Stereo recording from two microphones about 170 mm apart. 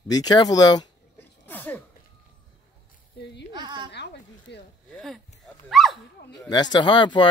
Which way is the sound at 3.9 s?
80° left.